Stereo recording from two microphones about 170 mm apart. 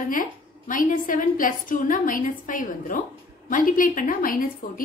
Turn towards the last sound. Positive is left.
turn(degrees=55)  # may be behind; listen again after turning